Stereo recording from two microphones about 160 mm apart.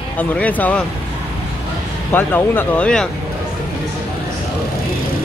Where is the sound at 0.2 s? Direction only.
10° left (ahead or behind).